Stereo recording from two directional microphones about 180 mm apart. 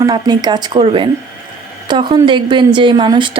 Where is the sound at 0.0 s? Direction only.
20° right (ahead or behind).